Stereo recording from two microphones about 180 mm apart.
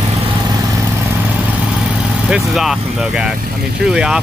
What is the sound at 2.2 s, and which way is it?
Speech, 5° right (ahead or behind).